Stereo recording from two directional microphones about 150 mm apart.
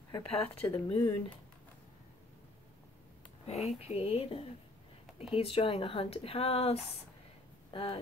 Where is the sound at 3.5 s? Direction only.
45° left (ahead or behind).